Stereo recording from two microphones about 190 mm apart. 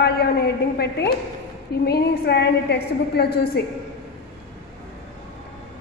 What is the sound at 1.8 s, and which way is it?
A woman's voice, 60° left (ahead or behind).